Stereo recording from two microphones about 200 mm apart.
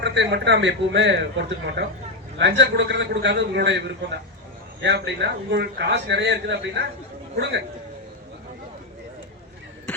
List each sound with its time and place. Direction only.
0.0 s a man's voice: 60° right (ahead or behind)
4.8 s a man's voice: 60° right (ahead or behind)